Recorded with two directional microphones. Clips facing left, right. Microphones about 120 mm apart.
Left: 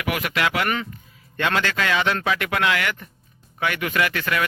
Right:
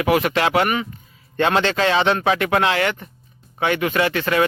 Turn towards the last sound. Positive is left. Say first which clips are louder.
# right 4 dB
turn(degrees=-25)  # may be behind; listen again after turning